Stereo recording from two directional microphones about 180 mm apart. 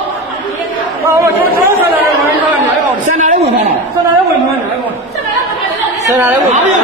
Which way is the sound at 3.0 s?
45° right (ahead or behind).